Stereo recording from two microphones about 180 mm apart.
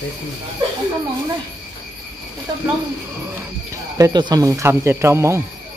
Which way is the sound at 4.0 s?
25° right (ahead or behind).